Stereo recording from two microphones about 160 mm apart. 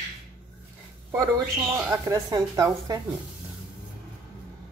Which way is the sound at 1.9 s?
20° right (ahead or behind).